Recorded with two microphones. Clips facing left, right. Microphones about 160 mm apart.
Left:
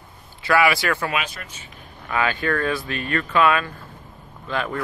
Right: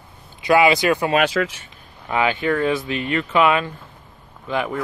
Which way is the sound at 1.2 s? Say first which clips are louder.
Right 15 dB; 90° right.